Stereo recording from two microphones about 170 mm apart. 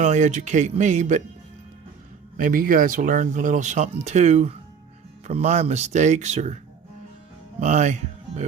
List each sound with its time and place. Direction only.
0.0 s speech: 45° right (ahead or behind)
2.4 s speech: 55° right (ahead or behind)
7.6 s speech: 45° right (ahead or behind)